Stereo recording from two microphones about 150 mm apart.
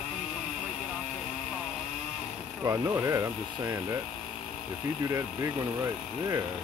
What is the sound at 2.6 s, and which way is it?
Speech, 20° right (ahead or behind).